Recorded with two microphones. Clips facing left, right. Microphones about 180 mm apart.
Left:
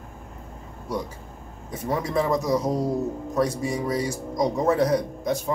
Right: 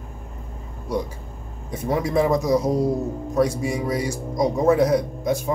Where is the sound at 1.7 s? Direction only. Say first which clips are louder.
Right 4 dB; 10° right (ahead or behind).